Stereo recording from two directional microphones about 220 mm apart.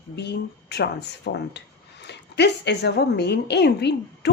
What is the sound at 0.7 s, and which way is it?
A woman's voice, 50° left (ahead or behind).